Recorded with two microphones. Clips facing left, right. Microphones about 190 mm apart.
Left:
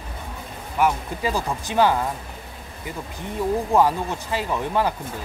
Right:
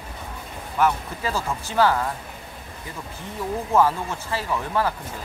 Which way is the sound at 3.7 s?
15° left (ahead or behind).